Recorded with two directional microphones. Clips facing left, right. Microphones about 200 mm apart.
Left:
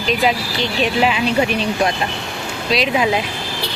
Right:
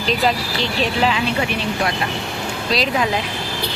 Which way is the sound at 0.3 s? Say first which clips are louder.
Left 1 dB; centre (ahead or behind).